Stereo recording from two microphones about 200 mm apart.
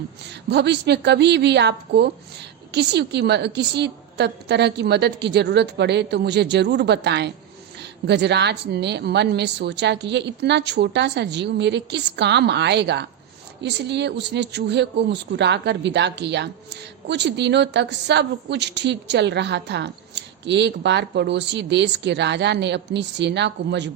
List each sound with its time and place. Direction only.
0.2 s speech: 60° right (ahead or behind)